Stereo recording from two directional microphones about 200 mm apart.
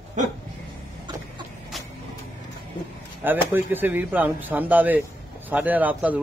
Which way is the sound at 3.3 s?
10° right (ahead or behind).